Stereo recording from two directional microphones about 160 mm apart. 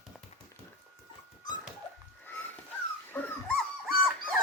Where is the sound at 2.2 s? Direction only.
10° left (ahead or behind).